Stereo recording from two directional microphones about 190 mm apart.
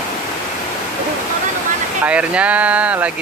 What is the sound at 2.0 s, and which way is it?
Speech, 5° right (ahead or behind).